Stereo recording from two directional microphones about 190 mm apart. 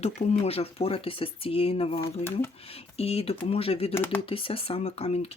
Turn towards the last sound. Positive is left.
turn(degrees=35)  # may be behind; listen again after turning